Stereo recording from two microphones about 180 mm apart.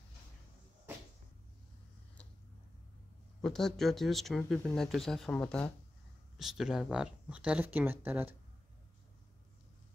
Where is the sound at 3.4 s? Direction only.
Centre (ahead or behind).